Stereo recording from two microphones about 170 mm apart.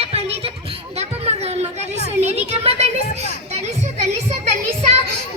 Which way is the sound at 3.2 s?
40° right (ahead or behind).